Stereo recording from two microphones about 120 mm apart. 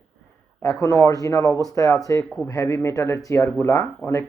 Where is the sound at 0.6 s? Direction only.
25° left (ahead or behind).